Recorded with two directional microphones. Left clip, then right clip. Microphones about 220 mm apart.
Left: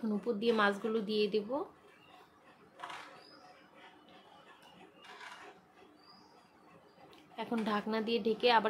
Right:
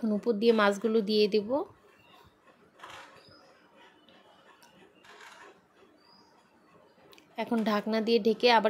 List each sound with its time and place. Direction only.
0.0 s speech: 25° right (ahead or behind)
7.3 s speech: 30° right (ahead or behind)